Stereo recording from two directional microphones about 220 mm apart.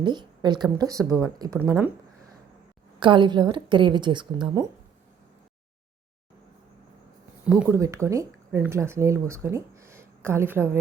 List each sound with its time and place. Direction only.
0.0 s a woman's voice: 20° right (ahead or behind)
3.0 s a woman's voice: 20° right (ahead or behind)
7.4 s a woman's voice: 5° right (ahead or behind)